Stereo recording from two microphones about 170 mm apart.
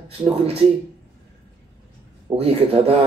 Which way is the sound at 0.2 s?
35° right (ahead or behind).